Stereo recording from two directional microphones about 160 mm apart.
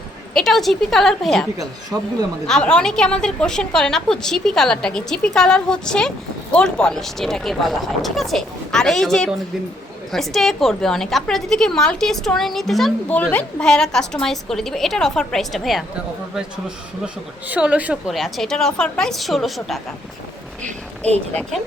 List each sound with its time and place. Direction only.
0.3 s a woman's voice: centre (ahead or behind)
2.5 s a woman's voice: 5° left (ahead or behind)
17.5 s a woman's voice: 10° right (ahead or behind)
20.7 s speech: 40° right (ahead or behind)